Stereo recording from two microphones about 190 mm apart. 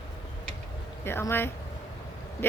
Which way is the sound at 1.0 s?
15° left (ahead or behind).